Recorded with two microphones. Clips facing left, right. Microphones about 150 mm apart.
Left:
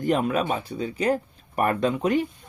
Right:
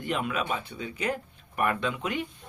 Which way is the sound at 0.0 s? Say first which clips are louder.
Left 7 dB; 40° left (ahead or behind).